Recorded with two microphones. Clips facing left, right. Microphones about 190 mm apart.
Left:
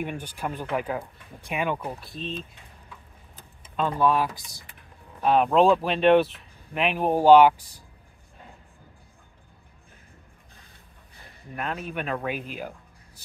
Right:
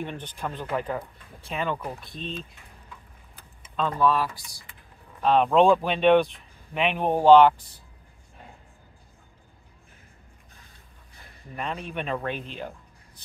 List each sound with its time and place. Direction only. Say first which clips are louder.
0.0 s speech: left 2 dB; 10° left (ahead or behind)
3.7 s speech: left 1 dB; 10° left (ahead or behind)
5.2 s speech: even; 5° left (ahead or behind)
11.5 s speech: left 1 dB; 5° left (ahead or behind)